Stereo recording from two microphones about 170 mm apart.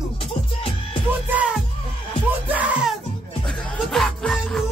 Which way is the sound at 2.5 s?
10° right (ahead or behind).